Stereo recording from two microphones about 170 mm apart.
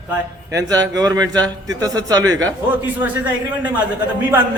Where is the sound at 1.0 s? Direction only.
20° right (ahead or behind).